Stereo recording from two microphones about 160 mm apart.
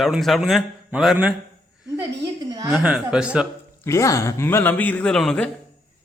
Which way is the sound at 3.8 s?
20° left (ahead or behind).